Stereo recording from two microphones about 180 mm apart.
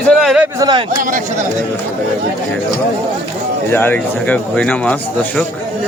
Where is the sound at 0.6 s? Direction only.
25° right (ahead or behind).